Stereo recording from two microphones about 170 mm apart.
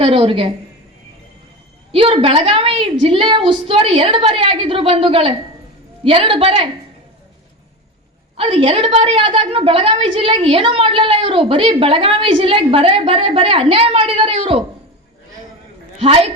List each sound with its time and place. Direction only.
0.0 s a woman's voice: 30° right (ahead or behind)
1.9 s a woman's voice: 35° right (ahead or behind)
8.4 s a woman's voice: 30° right (ahead or behind)
16.0 s a woman's voice: 40° right (ahead or behind)